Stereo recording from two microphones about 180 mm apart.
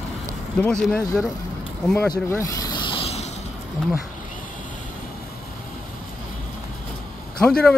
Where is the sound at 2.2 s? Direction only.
15° left (ahead or behind); by 3.3 s 35° left (ahead or behind).